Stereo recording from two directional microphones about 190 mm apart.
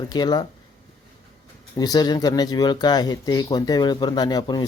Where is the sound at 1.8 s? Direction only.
20° left (ahead or behind).